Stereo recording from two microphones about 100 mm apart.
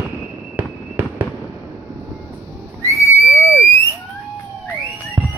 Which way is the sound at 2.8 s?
30° left (ahead or behind).